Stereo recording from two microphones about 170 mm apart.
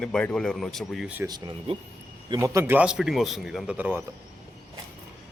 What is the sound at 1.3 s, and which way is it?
A man's voice, 25° right (ahead or behind).